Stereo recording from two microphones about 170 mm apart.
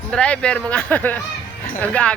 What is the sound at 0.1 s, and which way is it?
Speech, 5° left (ahead or behind).